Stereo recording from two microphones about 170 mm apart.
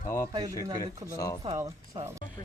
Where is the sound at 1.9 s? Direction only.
30° right (ahead or behind).